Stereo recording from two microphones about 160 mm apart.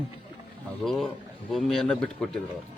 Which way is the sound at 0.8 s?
Centre (ahead or behind).